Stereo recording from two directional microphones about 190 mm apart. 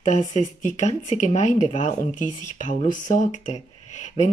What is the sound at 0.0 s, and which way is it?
Speech, 40° left (ahead or behind).